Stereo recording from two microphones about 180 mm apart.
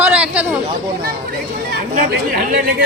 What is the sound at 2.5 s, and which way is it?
Speech, 55° right (ahead or behind).